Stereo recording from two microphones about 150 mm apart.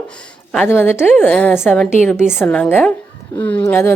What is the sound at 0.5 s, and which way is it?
A woman's voice, 10° left (ahead or behind).